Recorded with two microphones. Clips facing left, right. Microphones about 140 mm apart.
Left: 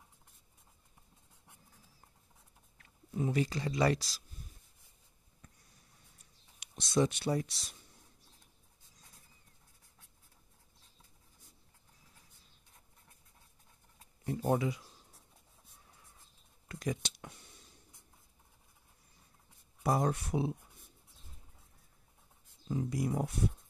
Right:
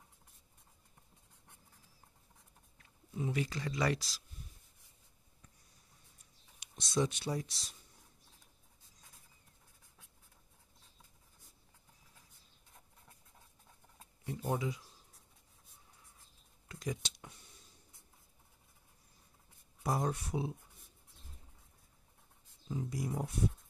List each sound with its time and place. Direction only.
3.2 s speech: 40° left (ahead or behind)
3.5 s speech: 30° left (ahead or behind)
6.6 s speech: 65° left (ahead or behind)
14.2 s speech: 45° left (ahead or behind)
16.6 s a sound: 65° left (ahead or behind)
19.8 s speech: 70° left (ahead or behind)
22.7 s speech: 75° left (ahead or behind)